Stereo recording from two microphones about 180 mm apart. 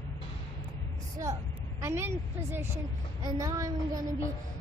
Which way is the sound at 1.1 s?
20° right (ahead or behind).